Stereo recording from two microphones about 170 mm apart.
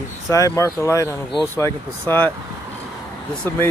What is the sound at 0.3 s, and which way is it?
Speech, 20° left (ahead or behind).